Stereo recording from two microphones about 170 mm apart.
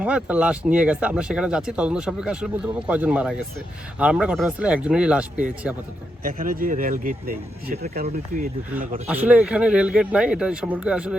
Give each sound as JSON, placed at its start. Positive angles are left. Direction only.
{"t": 0.0, "sound": "speech", "side_deg": -5}
{"t": 6.2, "sound": "speech", "side_deg": -55}
{"t": 9.0, "sound": "speech", "side_deg": -10}